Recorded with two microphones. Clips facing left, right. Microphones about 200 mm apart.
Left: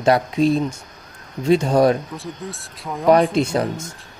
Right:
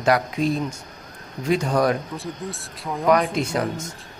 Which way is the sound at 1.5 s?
25° left (ahead or behind).